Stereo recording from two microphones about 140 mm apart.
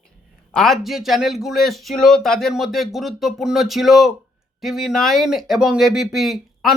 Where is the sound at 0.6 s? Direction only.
Centre (ahead or behind).